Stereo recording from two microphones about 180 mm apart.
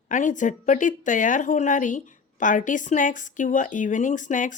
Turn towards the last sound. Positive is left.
turn(degrees=45)  # may be behind; listen again after turning